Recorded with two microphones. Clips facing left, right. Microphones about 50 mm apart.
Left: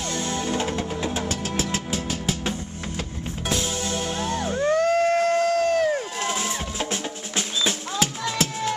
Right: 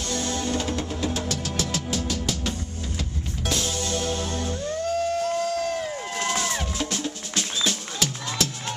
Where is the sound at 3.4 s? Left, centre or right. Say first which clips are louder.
Left 1 dB; centre.